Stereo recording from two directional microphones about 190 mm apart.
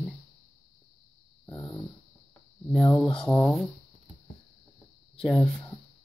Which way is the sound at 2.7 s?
5° left (ahead or behind).